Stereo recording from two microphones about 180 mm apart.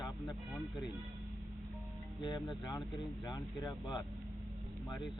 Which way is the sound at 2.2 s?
25° left (ahead or behind).